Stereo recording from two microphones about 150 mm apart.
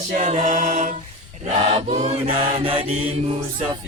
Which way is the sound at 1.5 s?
40° right (ahead or behind).